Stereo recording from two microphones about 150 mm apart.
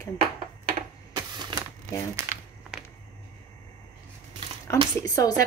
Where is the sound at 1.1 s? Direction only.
30° right (ahead or behind).